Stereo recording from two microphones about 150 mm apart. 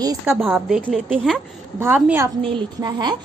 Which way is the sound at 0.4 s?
Centre (ahead or behind).